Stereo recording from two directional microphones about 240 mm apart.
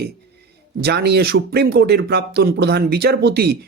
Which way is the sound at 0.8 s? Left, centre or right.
Right.